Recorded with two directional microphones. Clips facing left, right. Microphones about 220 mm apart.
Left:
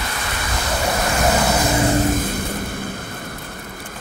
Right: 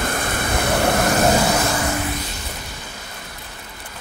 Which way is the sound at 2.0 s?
45° left (ahead or behind).